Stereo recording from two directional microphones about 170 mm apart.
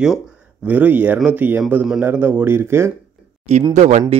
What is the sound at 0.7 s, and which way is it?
Speech, 10° right (ahead or behind).